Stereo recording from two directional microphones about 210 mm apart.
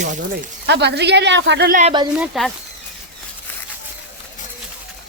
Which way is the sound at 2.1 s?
5° right (ahead or behind).